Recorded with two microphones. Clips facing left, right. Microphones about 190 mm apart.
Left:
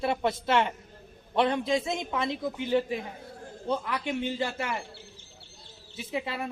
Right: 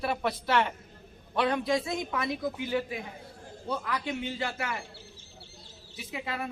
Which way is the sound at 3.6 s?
25° left (ahead or behind).